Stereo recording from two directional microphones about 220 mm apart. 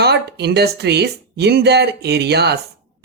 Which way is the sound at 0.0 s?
50° right (ahead or behind).